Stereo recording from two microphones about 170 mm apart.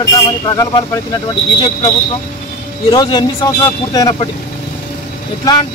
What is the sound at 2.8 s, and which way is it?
Speech, 30° left (ahead or behind).